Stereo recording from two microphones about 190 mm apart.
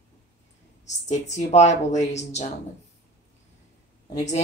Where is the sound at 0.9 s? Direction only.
35° left (ahead or behind).